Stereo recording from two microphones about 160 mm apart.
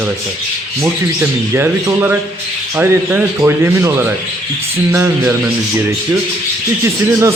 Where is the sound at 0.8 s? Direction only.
15° right (ahead or behind).